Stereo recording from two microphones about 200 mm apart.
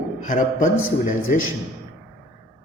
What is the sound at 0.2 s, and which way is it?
A man's voice, 40° left (ahead or behind).